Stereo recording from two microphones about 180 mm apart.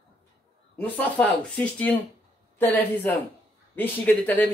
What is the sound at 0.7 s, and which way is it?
Speech, 10° left (ahead or behind).